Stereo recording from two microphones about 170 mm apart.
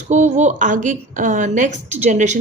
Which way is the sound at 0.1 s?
45° right (ahead or behind).